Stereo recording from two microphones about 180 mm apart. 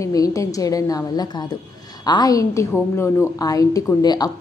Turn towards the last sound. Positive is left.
turn(degrees=20)  # may be behind; listen again after turning